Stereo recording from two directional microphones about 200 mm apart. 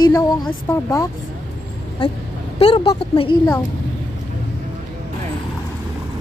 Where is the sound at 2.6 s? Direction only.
25° left (ahead or behind).